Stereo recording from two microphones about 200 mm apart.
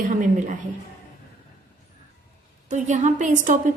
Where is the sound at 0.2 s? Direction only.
40° right (ahead or behind).